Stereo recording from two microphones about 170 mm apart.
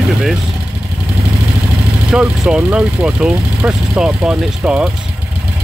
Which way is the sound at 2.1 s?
5° right (ahead or behind).